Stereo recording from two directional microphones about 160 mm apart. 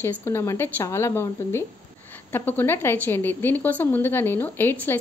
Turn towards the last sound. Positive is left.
turn(degrees=10)  # may be behind; listen again after turning